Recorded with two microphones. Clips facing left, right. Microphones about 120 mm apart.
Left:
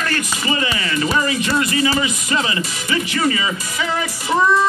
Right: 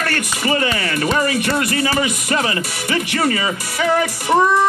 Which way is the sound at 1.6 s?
55° right (ahead or behind).